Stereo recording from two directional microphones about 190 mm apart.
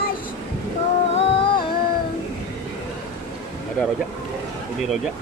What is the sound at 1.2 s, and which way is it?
Music, 30° left (ahead or behind).